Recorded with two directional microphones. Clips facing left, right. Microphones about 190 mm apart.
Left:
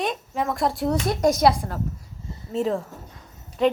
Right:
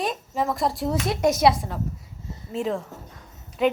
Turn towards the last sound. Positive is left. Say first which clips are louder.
# left 1 dB
turn(degrees=0)  # may be behind; listen again after turning